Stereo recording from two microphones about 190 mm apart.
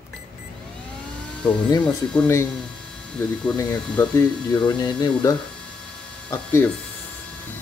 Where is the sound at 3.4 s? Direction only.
5° left (ahead or behind).